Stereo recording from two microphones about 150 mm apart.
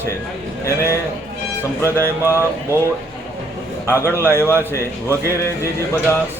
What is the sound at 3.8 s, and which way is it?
Speech, 15° left (ahead or behind).